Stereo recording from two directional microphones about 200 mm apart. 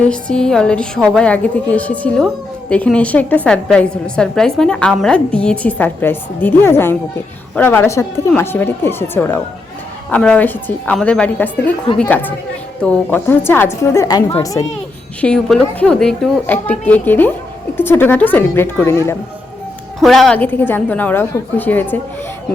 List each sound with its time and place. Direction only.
0.0 s a woman's voice: 5° left (ahead or behind)
15.2 s a woman's voice: 5° left (ahead or behind)
20.0 s a woman's voice: centre (ahead or behind)